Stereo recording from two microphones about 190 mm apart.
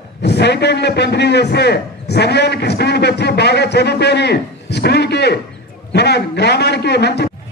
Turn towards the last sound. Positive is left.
turn(degrees=60)  # may be behind; listen again after turning